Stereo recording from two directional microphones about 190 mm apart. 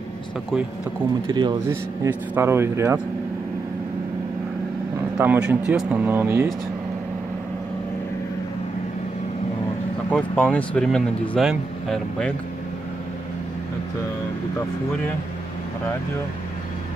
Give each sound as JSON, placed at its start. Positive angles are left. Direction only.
{"t": 1.2, "sound": "speech", "side_deg": -20}
{"t": 2.0, "sound": "speech", "side_deg": -10}
{"t": 5.1, "sound": "speech", "side_deg": -10}
{"t": 10.0, "sound": "speech", "side_deg": 10}